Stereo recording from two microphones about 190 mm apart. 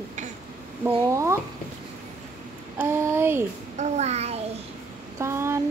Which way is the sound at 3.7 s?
35° right (ahead or behind).